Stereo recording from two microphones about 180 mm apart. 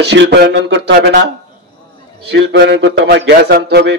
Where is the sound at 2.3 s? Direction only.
75° right (ahead or behind).